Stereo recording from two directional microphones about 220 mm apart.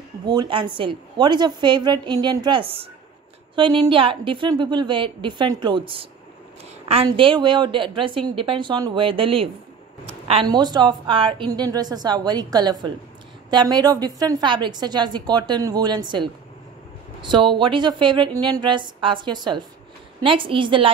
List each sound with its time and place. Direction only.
0.3 s a woman's voice: 20° right (ahead or behind)